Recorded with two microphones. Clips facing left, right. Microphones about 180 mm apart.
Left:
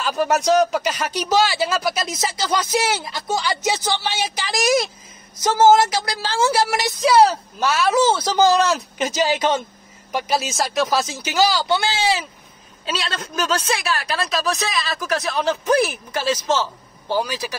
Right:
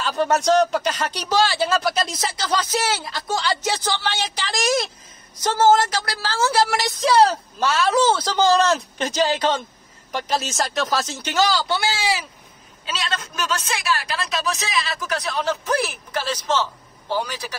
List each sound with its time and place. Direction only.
0.0 s a man's voice: 5° left (ahead or behind)
11.4 s speech: 15° left (ahead or behind)
13.4 s a man's voice: 35° left (ahead or behind); by 17.6 s 10° left (ahead or behind)